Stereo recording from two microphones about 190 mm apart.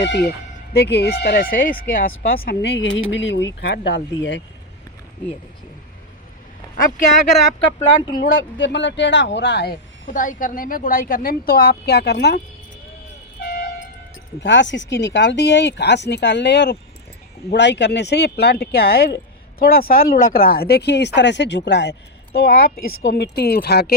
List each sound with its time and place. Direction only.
0.1 s speech: 55° left (ahead or behind); by 4.4 s 75° left (ahead or behind)
8.2 s speech: 65° left (ahead or behind)
10.1 s a woman's voice: 45° left (ahead or behind); by 12.4 s 60° left (ahead or behind)
13.4 s vehicle: 55° left (ahead or behind)
14.4 s speech: 70° left (ahead or behind)